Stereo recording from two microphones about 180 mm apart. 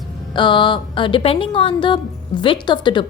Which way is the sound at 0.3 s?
25° left (ahead or behind).